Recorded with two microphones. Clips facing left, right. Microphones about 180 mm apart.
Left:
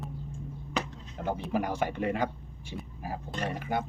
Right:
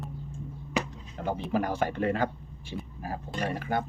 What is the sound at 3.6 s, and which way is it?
Speech, 15° left (ahead or behind).